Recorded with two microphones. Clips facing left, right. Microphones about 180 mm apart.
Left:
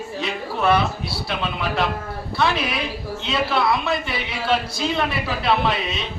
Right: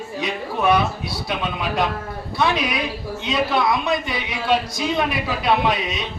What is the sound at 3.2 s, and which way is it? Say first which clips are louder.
A man's voice: right 1 dB; 15° right (ahead or behind).